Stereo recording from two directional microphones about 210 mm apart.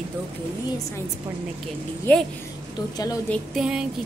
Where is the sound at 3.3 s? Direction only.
5° right (ahead or behind).